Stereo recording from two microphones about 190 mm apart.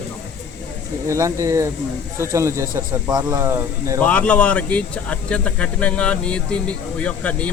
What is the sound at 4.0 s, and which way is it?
Speech, 5° left (ahead or behind).